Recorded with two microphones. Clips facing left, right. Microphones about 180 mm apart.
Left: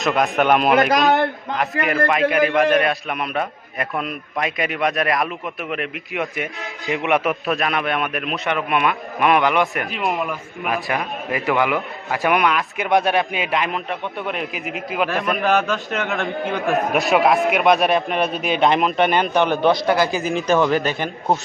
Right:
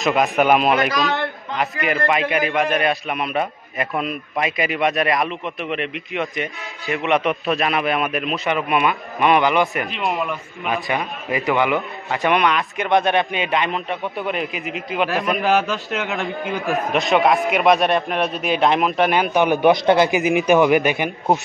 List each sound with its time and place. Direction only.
0.0 s speech: centre (ahead or behind)
0.8 s speech: 50° left (ahead or behind)
1.6 s speech: centre (ahead or behind)